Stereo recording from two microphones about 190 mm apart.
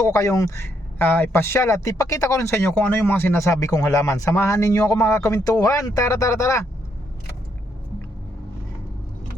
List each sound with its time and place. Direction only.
0.0 s speech: 15° left (ahead or behind)